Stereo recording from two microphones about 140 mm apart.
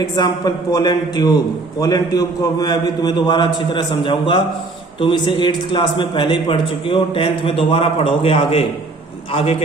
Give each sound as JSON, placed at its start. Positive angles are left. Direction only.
{"t": 0.2, "sound": "a man's voice", "side_deg": 30}